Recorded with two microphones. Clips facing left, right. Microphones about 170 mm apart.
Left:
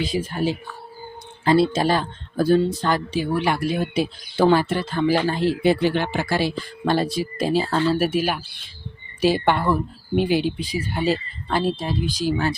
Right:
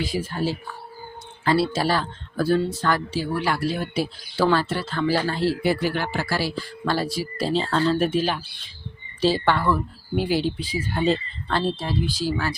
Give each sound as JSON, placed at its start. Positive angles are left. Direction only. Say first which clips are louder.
{"t": 0.0, "sound": "speech", "louder": "left 2 dB", "side_deg": 20}